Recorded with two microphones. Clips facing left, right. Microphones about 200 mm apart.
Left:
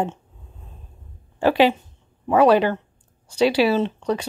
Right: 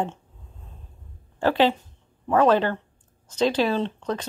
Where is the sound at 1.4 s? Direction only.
10° left (ahead or behind).